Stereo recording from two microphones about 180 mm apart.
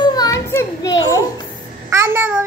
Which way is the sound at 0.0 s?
20° left (ahead or behind).